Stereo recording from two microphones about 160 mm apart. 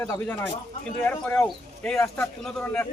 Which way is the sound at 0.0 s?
15° left (ahead or behind).